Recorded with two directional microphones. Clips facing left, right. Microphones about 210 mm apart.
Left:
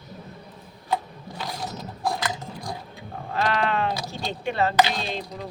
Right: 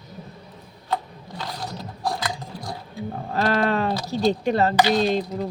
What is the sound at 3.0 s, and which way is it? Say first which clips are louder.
Sheep: right 4 dB; 40° right (ahead or behind).